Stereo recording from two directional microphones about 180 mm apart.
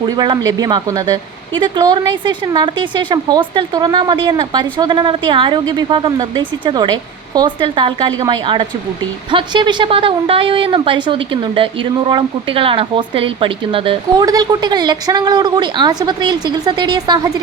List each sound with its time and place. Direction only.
0.0 s speech: 25° right (ahead or behind)